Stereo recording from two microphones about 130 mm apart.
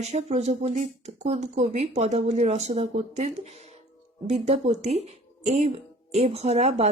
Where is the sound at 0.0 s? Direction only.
60° right (ahead or behind).